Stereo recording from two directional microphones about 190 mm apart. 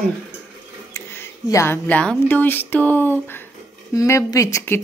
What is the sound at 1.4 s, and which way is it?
Speech, 15° left (ahead or behind).